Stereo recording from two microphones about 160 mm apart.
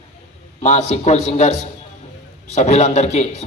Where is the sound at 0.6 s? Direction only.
45° left (ahead or behind).